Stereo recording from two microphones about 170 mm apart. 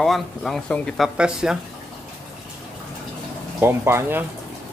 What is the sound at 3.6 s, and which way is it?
Speech, 15° right (ahead or behind).